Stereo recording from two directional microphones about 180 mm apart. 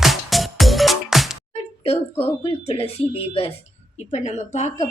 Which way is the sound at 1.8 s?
35° left (ahead or behind).